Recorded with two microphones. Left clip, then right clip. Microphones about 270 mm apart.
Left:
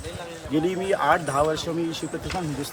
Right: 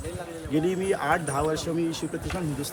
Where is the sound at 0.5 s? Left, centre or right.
Centre.